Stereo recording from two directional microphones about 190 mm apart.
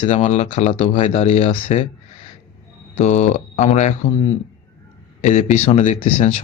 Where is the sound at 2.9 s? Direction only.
40° left (ahead or behind).